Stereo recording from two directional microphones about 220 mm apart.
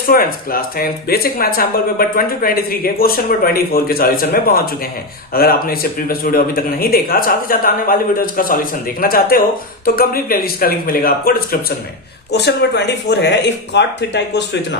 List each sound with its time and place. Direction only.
0.1 s a man's voice: 40° left (ahead or behind)